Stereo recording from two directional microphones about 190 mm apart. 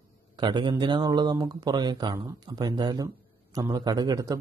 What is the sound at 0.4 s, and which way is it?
A man's voice, 25° right (ahead or behind).